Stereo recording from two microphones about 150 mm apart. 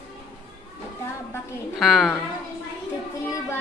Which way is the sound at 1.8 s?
Centre (ahead or behind).